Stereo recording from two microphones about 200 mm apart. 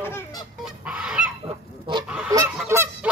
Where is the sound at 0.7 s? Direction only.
5° right (ahead or behind).